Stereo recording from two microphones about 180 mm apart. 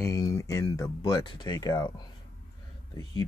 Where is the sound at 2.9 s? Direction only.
20° left (ahead or behind).